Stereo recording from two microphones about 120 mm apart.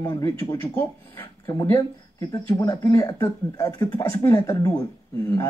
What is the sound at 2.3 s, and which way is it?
Speech, 35° left (ahead or behind).